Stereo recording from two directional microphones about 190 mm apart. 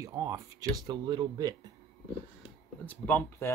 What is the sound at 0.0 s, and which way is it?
Speech, 20° right (ahead or behind).